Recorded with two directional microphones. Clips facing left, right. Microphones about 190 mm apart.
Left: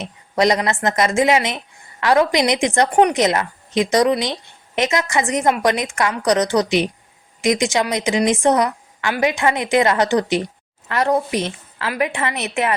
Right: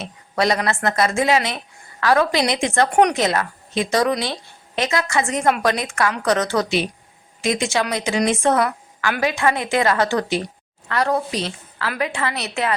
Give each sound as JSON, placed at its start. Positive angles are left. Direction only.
{"t": 0.0, "sound": "a woman's voice", "side_deg": 20}